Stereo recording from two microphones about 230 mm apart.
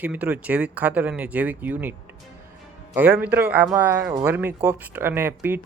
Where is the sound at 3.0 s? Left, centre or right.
Centre.